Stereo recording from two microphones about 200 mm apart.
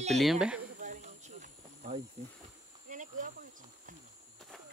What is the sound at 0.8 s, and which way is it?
Snake, 40° right (ahead or behind).